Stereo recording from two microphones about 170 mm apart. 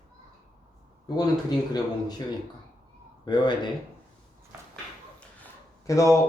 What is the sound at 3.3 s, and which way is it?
Speech, 25° left (ahead or behind).